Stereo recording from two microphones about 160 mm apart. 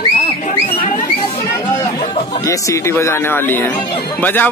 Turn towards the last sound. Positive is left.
turn(degrees=10)  # may be behind; listen again after turning